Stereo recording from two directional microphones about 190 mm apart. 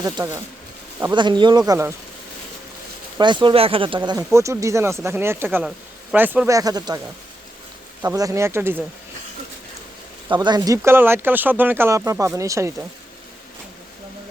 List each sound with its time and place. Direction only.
1.1 s speech: 25° right (ahead or behind)
3.2 s speech: 25° right (ahead or behind); by 6.6 s 10° right (ahead or behind)
6.6 s speech: 20° right (ahead or behind)
8.0 s speech: 15° right (ahead or behind)
10.3 s speech: 25° right (ahead or behind)